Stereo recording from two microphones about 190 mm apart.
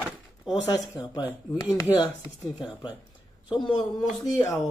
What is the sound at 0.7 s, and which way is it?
Speech, 20° left (ahead or behind).